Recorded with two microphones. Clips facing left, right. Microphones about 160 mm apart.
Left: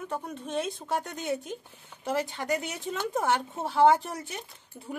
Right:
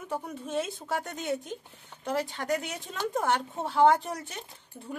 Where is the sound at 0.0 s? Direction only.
5° right (ahead or behind).